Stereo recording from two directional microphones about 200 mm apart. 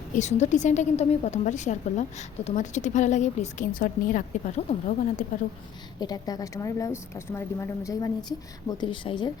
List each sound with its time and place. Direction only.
0.1 s a woman's voice: 35° left (ahead or behind)
6.0 s speech: 20° left (ahead or behind)